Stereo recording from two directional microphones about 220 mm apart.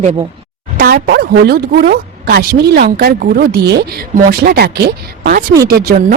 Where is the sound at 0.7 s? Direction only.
45° right (ahead or behind).